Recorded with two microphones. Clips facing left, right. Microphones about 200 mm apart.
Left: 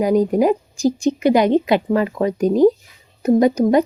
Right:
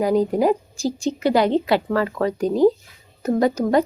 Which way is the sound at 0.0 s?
20° left (ahead or behind).